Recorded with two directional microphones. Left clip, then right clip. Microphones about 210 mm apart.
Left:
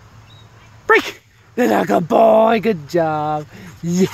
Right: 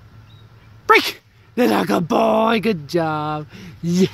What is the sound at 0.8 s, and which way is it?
Speech, 15° right (ahead or behind).